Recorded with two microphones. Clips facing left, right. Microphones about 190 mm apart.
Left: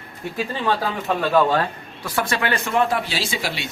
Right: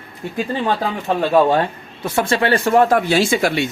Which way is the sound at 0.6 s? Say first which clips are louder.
Even; 20° right (ahead or behind).